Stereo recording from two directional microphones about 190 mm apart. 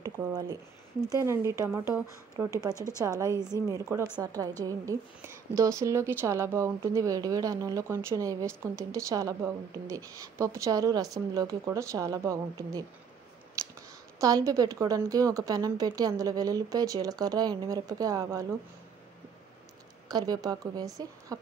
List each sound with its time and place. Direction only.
0.0 s a woman's voice: 20° right (ahead or behind)
13.6 s clicking: 15° right (ahead or behind)
14.2 s a woman's voice: 20° right (ahead or behind)
20.1 s a woman's voice: 20° right (ahead or behind)